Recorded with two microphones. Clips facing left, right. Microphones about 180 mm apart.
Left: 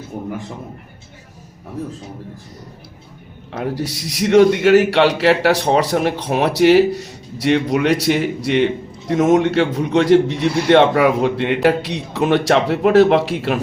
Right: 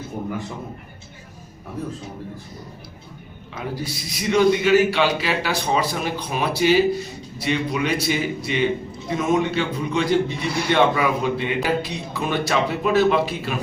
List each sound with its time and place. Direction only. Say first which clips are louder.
3.5 s a man's voice: left 6 dB; 75° left (ahead or behind)